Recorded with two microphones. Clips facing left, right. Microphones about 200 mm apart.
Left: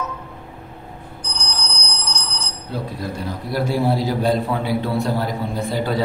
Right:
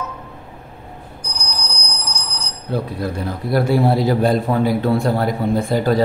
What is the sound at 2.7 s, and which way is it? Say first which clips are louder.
A man's voice: right 5 dB; 60° right (ahead or behind).